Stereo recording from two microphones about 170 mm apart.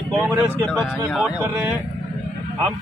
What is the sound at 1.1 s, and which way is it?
Speech, 5° right (ahead or behind).